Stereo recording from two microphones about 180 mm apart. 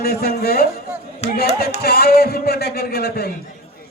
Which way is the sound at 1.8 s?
60° left (ahead or behind).